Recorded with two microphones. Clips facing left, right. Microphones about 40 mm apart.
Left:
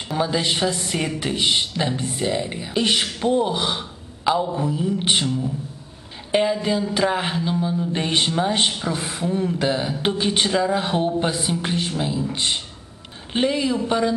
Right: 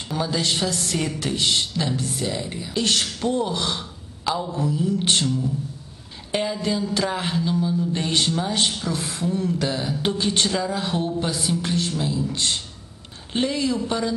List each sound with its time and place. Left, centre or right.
0.1 s speech: centre